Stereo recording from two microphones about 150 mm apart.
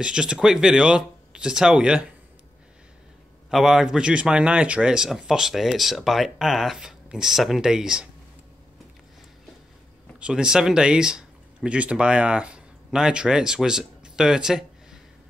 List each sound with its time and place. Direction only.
0.0 s speech: 5° right (ahead or behind)
3.4 s speech: 5° right (ahead or behind)
10.2 s speech: 5° right (ahead or behind)